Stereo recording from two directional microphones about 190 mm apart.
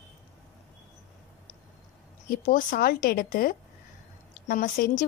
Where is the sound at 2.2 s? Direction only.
45° left (ahead or behind).